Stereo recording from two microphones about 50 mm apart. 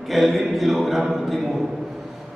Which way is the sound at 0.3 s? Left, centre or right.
Centre.